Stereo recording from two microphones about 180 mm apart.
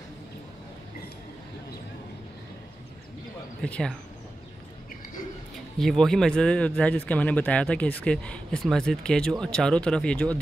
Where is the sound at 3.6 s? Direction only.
5° left (ahead or behind).